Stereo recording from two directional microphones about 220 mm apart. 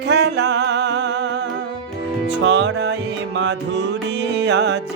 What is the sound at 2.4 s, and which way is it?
Music, 55° right (ahead or behind).